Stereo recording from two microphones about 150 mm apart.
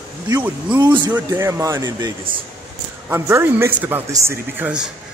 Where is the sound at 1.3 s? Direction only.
20° right (ahead or behind).